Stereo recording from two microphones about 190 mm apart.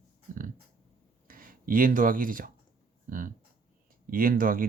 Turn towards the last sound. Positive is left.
turn(degrees=-50)  # may be behind; listen again after turning